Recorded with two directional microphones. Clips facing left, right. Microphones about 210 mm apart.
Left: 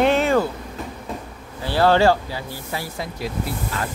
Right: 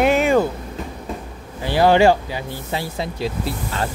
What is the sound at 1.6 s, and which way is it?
Speech, 15° right (ahead or behind).